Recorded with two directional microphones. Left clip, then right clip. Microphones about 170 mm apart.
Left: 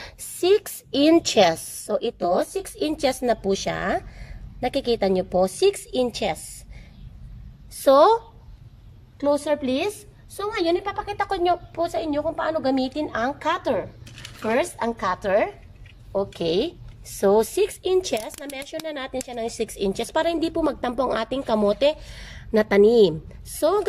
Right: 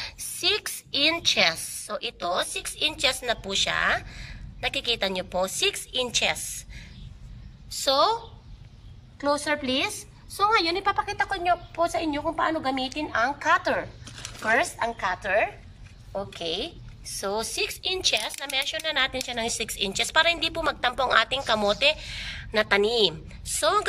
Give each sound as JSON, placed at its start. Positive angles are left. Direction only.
{"t": 0.0, "sound": "a sound", "side_deg": 40}
{"t": 0.7, "sound": "a woman's voice", "side_deg": 30}
{"t": 7.8, "sound": "a woman's voice", "side_deg": 55}
{"t": 10.8, "sound": "a woman's voice", "side_deg": 30}
{"t": 16.4, "sound": "a woman's voice", "side_deg": 60}